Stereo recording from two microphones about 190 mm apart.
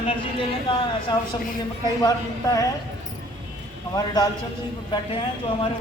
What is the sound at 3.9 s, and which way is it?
Speech, 20° left (ahead or behind).